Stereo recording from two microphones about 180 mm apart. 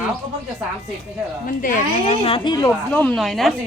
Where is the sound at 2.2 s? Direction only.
30° left (ahead or behind).